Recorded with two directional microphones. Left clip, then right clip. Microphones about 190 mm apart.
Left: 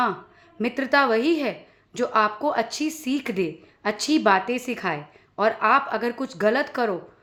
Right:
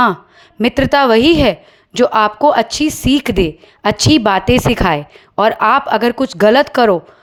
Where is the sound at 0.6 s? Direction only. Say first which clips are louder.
Right 9 dB; 45° right (ahead or behind).